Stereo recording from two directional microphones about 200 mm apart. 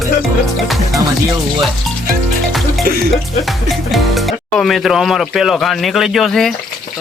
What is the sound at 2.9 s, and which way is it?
Music, 45° right (ahead or behind).